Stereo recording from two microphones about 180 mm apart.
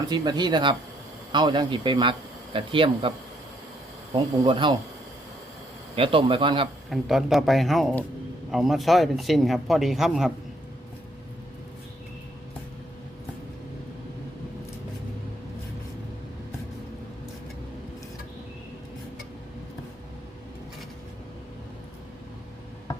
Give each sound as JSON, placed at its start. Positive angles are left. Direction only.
{"t": 0.1, "sound": "speech", "side_deg": -25}
{"t": 4.1, "sound": "speech", "side_deg": -25}
{"t": 6.0, "sound": "speech", "side_deg": -30}
{"t": 6.9, "sound": "speech", "side_deg": 0}